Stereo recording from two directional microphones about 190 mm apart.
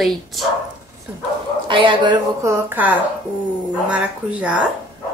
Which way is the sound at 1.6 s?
25° right (ahead or behind).